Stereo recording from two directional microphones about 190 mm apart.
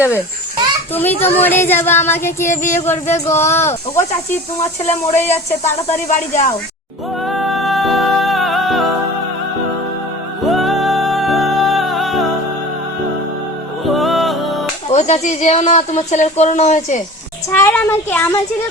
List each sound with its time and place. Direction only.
0.9 s child singing: 10° left (ahead or behind)
5.1 s child singing: 10° left (ahead or behind)
5.6 s speech: 40° left (ahead or behind)
7.3 s music: centre (ahead or behind)
10.4 s music: centre (ahead or behind)
13.8 s music: centre (ahead or behind)
14.8 s speech: 35° left (ahead or behind)
17.5 s child singing: 10° left (ahead or behind)